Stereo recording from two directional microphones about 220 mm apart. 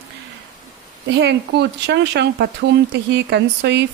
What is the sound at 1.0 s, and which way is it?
Speech, 50° right (ahead or behind).